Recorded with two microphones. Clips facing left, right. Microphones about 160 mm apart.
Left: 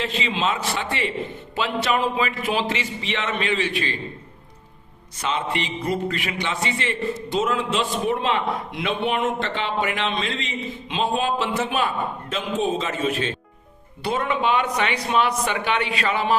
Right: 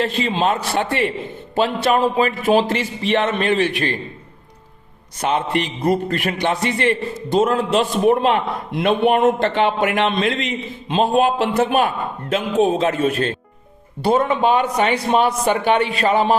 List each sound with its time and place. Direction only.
0.0 s a man's voice: 55° right (ahead or behind)
5.2 s a man's voice: 55° right (ahead or behind)
10.8 s a man's voice: 45° right (ahead or behind)